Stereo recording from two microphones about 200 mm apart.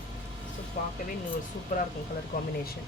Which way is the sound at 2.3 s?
50° left (ahead or behind).